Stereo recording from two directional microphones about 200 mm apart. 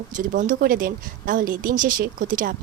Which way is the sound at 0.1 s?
40° right (ahead or behind).